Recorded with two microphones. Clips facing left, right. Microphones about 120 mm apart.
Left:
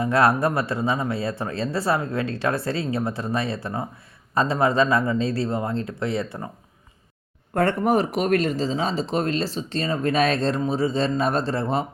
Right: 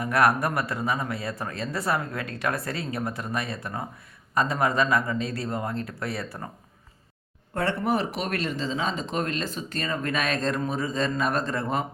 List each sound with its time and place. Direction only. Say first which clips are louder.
0.0 s speech: left 3 dB; 25° left (ahead or behind)
7.5 s speech: left 5 dB; 45° left (ahead or behind); by 11.9 s 30° left (ahead or behind)